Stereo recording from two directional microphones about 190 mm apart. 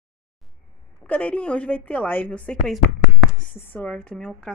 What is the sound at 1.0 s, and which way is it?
A woman's voice, 5° left (ahead or behind).